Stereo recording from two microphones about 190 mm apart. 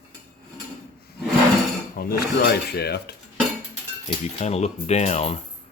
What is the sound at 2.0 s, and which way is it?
Speech, 55° left (ahead or behind).